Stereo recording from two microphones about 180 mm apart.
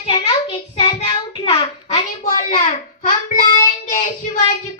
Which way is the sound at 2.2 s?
45° left (ahead or behind).